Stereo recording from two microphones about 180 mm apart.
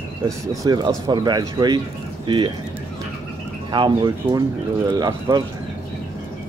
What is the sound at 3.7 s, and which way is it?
Speech, 25° right (ahead or behind).